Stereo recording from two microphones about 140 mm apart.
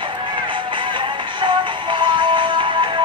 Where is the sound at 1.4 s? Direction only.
35° right (ahead or behind).